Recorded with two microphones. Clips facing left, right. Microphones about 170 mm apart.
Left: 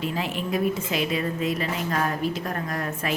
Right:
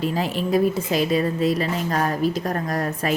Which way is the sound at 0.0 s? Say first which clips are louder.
Right 5 dB; 40° right (ahead or behind).